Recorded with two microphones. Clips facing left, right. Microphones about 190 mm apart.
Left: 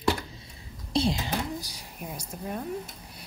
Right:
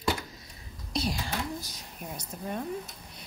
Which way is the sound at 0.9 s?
25° left (ahead or behind).